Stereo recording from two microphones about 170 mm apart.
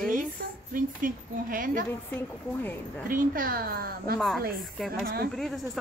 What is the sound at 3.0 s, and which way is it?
Speech, 55° right (ahead or behind).